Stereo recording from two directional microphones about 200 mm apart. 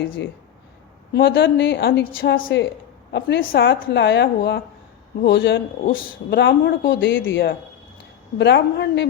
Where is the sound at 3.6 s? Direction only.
60° left (ahead or behind).